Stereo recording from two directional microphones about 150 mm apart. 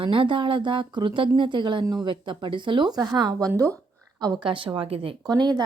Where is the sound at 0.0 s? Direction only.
35° right (ahead or behind).